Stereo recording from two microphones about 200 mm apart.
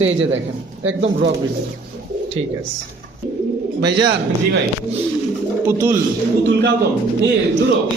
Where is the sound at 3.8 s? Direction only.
60° right (ahead or behind).